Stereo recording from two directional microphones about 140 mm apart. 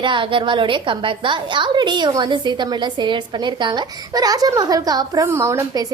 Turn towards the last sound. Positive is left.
turn(degrees=-25)  # may be behind; listen again after turning